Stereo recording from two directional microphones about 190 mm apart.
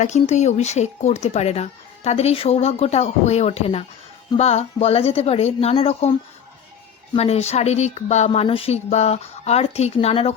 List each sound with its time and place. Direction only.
0.0 s speech: 40° left (ahead or behind)